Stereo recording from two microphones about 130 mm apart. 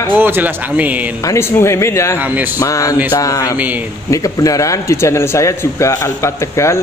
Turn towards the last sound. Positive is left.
turn(degrees=20)  # may be behind; listen again after turning